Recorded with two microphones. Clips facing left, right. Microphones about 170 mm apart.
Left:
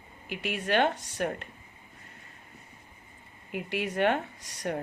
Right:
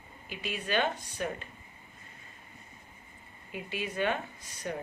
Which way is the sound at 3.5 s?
75° left (ahead or behind).